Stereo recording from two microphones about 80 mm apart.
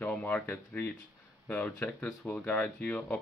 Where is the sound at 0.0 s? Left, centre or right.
Left.